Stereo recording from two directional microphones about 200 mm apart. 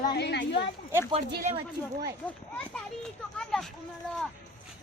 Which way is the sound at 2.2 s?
5° left (ahead or behind).